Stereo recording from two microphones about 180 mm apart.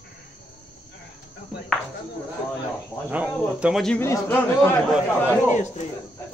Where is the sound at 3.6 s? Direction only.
Centre (ahead or behind).